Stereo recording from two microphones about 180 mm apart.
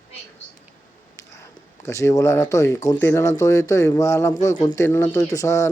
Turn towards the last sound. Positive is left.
turn(degrees=15)  # may be behind; listen again after turning